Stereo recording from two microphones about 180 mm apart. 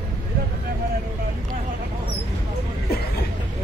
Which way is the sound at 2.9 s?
60° left (ahead or behind).